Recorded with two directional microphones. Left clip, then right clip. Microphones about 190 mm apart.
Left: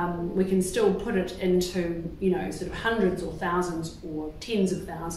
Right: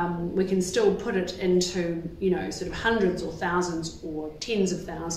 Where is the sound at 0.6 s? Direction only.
15° right (ahead or behind).